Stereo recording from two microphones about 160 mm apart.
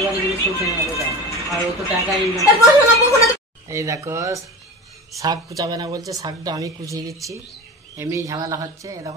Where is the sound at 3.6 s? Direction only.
20° right (ahead or behind).